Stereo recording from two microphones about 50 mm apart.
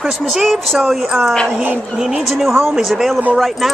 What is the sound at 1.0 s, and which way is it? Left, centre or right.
A man's voice, centre.